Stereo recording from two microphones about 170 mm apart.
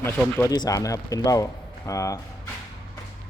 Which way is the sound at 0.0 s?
15° left (ahead or behind).